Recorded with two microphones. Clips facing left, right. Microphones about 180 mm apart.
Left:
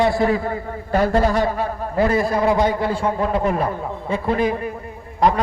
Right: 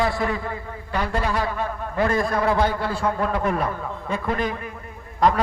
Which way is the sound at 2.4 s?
15° left (ahead or behind).